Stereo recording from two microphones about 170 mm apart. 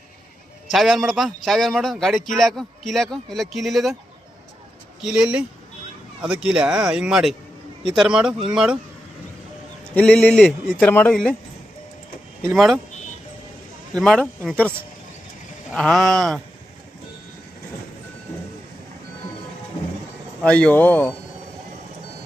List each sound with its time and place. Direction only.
0.7 s a man's voice: centre (ahead or behind)
5.0 s a man's voice: 5° right (ahead or behind)
9.8 s speech: 5° left (ahead or behind)
12.5 s a man's voice: centre (ahead or behind)
14.0 s a man's voice: 5° left (ahead or behind)
15.7 s a man's voice: 5° left (ahead or behind)
20.4 s speech: 5° left (ahead or behind)